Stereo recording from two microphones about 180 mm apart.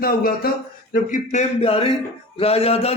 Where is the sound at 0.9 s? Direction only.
45° left (ahead or behind).